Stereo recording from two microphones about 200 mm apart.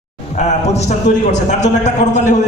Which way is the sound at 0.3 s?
35° left (ahead or behind).